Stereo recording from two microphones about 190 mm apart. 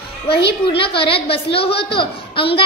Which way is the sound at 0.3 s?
25° left (ahead or behind).